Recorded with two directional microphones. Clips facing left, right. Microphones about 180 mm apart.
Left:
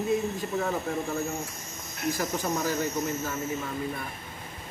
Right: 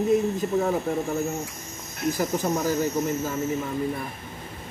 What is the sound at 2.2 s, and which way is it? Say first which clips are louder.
Speech: right 5 dB; 15° right (ahead or behind).